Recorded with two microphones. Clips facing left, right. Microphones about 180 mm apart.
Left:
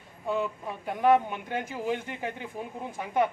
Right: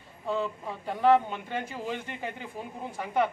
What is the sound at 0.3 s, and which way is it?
Speech, 15° left (ahead or behind).